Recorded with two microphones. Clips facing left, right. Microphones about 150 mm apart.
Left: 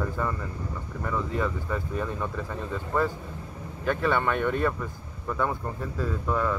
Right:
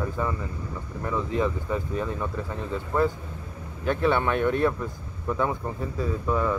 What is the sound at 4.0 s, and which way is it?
Speech, 10° right (ahead or behind).